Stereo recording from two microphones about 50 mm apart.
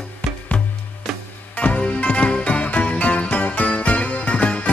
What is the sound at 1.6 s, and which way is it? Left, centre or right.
Music, left.